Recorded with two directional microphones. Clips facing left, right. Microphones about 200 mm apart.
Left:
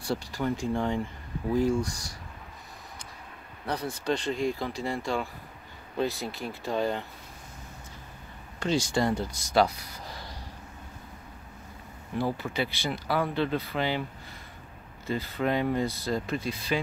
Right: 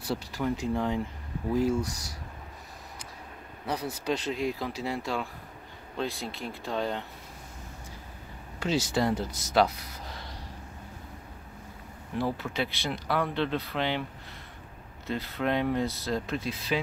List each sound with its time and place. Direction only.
0.0 s speech: 5° right (ahead or behind)
3.6 s speech: 5° right (ahead or behind)
8.5 s speech: 5° right (ahead or behind)
12.2 s speech: centre (ahead or behind)
15.0 s speech: centre (ahead or behind)